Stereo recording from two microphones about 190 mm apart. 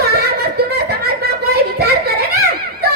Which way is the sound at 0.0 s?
55° right (ahead or behind).